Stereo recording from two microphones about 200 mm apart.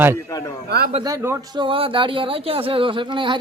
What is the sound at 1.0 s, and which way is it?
Speech, 15° right (ahead or behind).